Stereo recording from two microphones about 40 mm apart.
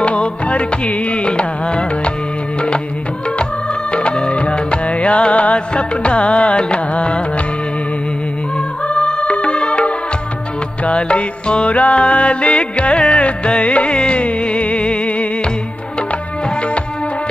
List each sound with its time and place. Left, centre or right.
0.0 s music: left
3.9 s music: left
8.8 s music: left